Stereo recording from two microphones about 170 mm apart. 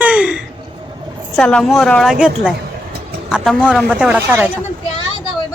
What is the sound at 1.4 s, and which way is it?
A woman's voice, 5° left (ahead or behind).